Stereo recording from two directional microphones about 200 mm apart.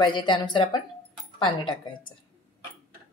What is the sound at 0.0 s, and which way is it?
Speech, 25° left (ahead or behind).